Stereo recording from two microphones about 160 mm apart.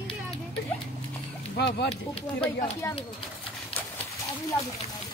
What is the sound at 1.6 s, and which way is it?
Speech, 90° left.